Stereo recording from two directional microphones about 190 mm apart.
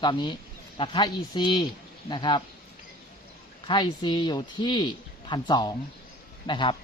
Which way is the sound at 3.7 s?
25° left (ahead or behind).